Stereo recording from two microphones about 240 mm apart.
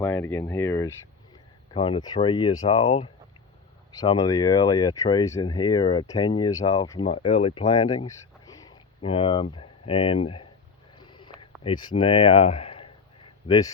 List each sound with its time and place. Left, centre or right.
0.0 s speech: centre
10.9 s a sound: centre
11.6 s speech: centre